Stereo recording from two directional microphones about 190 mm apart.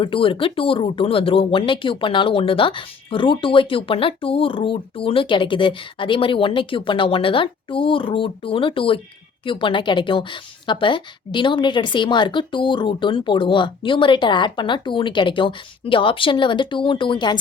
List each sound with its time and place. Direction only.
0.0 s speech: 30° left (ahead or behind)